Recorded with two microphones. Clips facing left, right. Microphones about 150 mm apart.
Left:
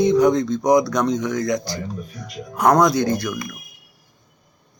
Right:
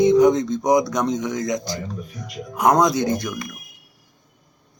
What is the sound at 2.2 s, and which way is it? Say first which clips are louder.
Speech: even; 15° right (ahead or behind).